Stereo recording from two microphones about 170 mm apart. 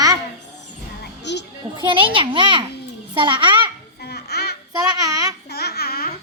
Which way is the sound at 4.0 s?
70° left (ahead or behind).